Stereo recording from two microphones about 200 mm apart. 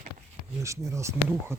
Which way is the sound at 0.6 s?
15° right (ahead or behind).